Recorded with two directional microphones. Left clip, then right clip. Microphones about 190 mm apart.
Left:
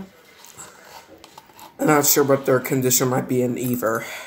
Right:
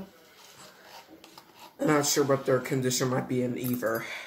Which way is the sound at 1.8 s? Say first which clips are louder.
Left 8 dB; 40° left (ahead or behind).